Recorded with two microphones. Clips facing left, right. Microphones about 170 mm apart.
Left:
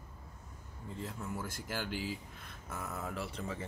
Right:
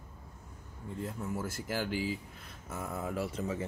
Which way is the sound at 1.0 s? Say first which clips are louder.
Right 4 dB; 50° right (ahead or behind).